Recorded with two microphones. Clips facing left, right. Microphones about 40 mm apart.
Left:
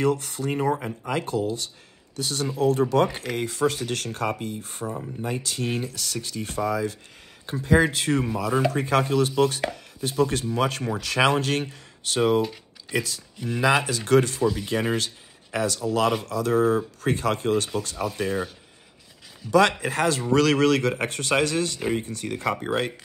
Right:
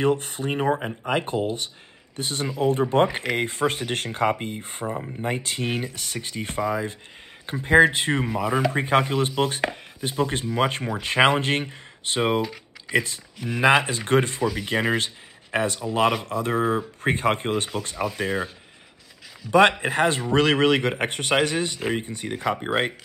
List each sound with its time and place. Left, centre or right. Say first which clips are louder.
0.0 s speech: right 1 dB; right
19.5 s speech: right 2 dB; right